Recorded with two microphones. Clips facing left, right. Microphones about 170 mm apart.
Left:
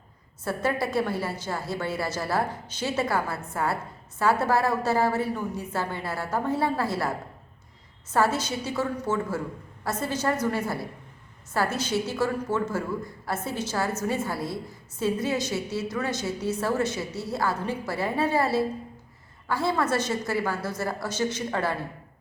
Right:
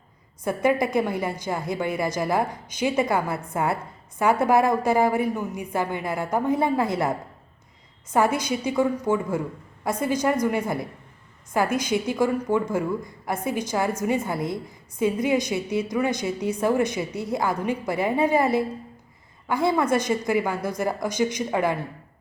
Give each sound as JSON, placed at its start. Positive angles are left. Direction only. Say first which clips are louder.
{"t": 0.4, "sound": "a woman's voice", "louder": "right 5 dB", "side_deg": -15}
{"t": 8.1, "sound": "a woman's voice", "louder": "right 3 dB", "side_deg": -15}